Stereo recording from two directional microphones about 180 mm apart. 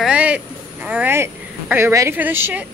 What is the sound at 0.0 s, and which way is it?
Speech, 5° right (ahead or behind).